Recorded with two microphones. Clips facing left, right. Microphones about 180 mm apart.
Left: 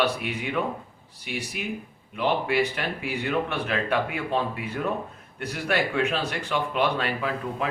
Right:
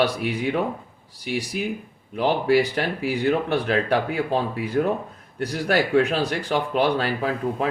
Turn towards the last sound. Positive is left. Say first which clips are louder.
# right 4 dB
turn(degrees=-35)  # may be behind; listen again after turning